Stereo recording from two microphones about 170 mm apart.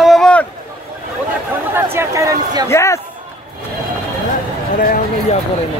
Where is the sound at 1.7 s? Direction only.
15° right (ahead or behind).